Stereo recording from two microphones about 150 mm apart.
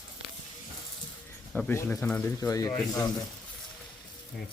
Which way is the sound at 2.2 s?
20° left (ahead or behind).